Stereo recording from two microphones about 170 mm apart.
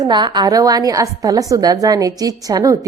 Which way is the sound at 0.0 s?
25° right (ahead or behind).